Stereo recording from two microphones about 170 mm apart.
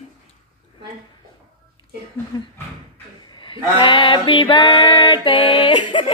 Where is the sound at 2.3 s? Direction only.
25° left (ahead or behind).